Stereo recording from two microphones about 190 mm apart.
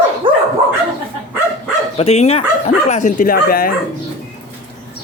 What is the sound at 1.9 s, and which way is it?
Speech, 30° left (ahead or behind).